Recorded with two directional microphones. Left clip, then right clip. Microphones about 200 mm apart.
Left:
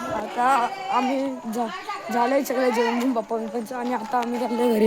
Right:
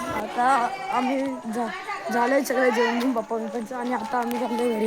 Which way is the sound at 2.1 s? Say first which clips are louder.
Even; 10° left (ahead or behind).